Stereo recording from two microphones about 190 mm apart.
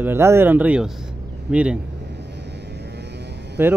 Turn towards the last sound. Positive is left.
turn(degrees=-10)  # may be behind; listen again after turning